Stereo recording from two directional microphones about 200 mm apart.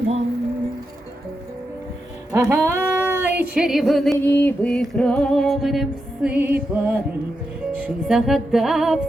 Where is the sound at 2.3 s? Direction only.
15° right (ahead or behind).